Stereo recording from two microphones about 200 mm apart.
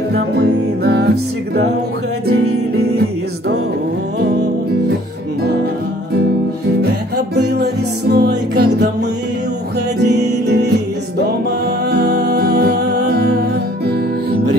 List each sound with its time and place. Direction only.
0.1 s music: 55° right (ahead or behind)
2.8 s music: 55° right (ahead or behind)
6.8 s music: 55° right (ahead or behind)
9.9 s music: 55° right (ahead or behind)